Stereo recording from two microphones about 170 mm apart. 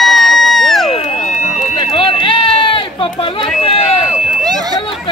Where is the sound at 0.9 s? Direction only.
35° left (ahead or behind).